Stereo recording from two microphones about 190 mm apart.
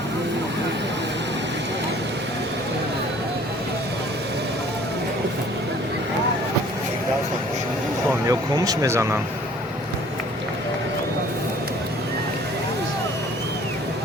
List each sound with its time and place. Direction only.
8.3 s speech: 20° right (ahead or behind)